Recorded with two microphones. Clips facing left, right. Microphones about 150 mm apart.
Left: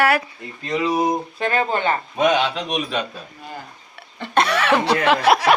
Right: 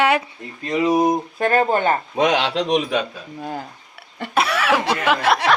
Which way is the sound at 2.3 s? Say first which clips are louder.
Right 3 dB; 90° right.